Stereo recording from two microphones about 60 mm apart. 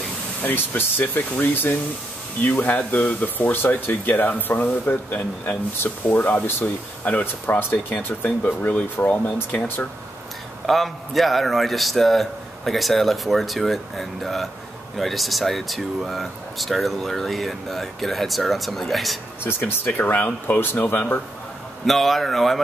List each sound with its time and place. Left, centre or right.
0.4 s speech: left
10.7 s speech: centre
19.4 s speech: left
21.8 s speech: centre